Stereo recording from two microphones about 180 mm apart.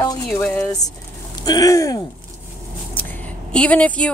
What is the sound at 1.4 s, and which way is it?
Speech, 20° left (ahead or behind).